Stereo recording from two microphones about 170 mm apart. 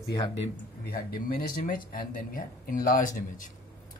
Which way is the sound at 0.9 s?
60° left (ahead or behind).